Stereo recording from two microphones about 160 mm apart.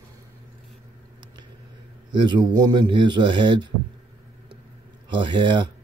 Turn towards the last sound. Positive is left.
turn(degrees=-30)  # may be behind; listen again after turning